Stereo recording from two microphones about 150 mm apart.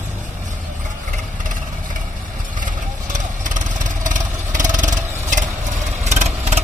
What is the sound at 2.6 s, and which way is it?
Vehicle, 60° right (ahead or behind).